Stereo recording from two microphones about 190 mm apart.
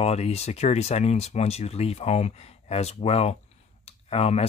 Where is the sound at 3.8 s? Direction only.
30° left (ahead or behind).